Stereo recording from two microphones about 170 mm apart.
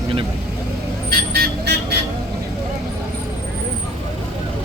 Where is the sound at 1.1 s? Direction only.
65° right (ahead or behind).